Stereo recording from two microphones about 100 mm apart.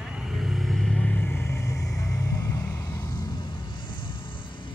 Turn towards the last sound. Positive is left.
turn(degrees=35)  # may be behind; listen again after turning